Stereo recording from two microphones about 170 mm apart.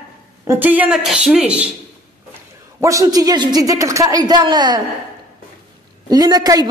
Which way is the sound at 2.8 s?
20° right (ahead or behind).